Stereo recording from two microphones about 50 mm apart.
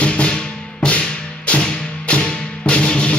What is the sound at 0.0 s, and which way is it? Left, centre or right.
Music, left.